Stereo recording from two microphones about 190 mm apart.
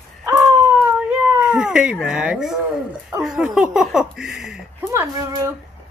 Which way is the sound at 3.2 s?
5° right (ahead or behind).